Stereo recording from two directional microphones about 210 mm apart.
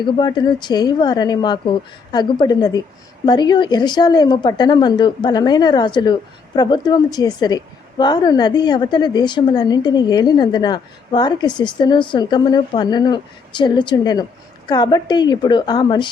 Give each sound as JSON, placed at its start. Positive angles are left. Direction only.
{"t": 0.0, "sound": "a woman's voice", "side_deg": 20}